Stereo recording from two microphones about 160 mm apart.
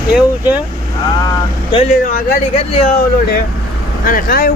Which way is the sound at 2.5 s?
40° left (ahead or behind).